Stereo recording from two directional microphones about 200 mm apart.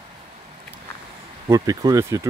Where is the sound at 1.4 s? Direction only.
20° right (ahead or behind).